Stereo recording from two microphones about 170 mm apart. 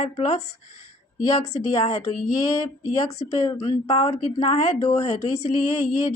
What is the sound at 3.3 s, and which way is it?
A woman's voice, 35° left (ahead or behind).